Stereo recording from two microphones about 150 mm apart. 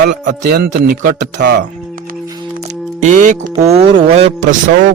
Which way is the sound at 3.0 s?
55° right (ahead or behind).